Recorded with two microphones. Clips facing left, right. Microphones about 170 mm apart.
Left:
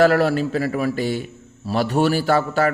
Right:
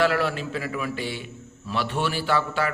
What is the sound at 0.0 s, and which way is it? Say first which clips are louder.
A man's voice: left 7 dB; 40° left (ahead or behind).